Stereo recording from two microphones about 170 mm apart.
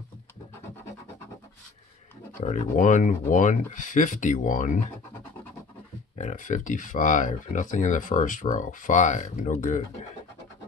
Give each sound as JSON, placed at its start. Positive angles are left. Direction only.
{"t": 2.4, "sound": "speech", "side_deg": 40}
{"t": 6.1, "sound": "speech", "side_deg": 45}